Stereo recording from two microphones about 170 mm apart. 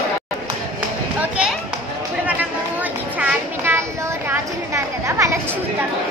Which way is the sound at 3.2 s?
15° right (ahead or behind).